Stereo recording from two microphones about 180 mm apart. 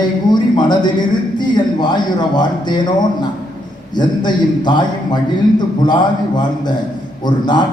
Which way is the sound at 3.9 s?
25° left (ahead or behind).